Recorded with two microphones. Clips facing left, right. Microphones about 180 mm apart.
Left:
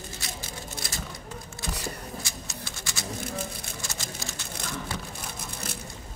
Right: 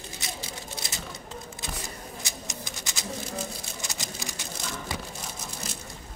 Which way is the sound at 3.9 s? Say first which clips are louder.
Even; 15° right (ahead or behind).